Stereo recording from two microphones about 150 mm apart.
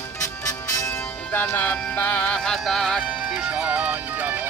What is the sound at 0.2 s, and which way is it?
Music, 20° left (ahead or behind).